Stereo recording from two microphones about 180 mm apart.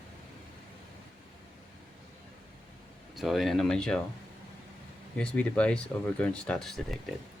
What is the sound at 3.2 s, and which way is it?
Speech, centre (ahead or behind).